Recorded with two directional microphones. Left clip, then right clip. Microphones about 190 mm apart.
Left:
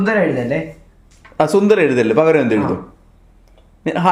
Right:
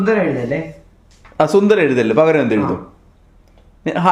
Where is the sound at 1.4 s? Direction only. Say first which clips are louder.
Even; centre (ahead or behind).